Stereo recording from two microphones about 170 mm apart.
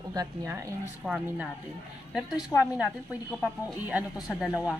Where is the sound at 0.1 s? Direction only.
20° right (ahead or behind).